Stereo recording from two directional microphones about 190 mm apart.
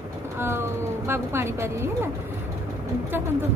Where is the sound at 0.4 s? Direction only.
15° right (ahead or behind).